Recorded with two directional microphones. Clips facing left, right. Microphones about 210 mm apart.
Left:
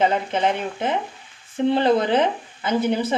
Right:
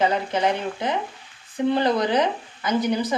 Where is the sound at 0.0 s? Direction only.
20° left (ahead or behind).